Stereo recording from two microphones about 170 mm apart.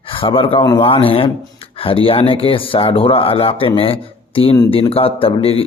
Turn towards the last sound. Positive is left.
turn(degrees=35)  # may be behind; listen again after turning